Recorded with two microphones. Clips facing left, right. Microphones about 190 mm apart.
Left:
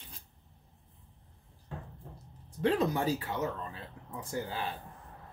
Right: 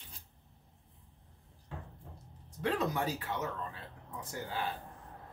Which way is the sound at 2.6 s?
30° left (ahead or behind).